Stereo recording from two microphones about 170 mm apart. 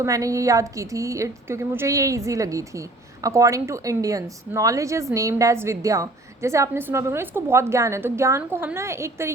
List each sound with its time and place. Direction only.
0.0 s a woman's voice: 20° right (ahead or behind)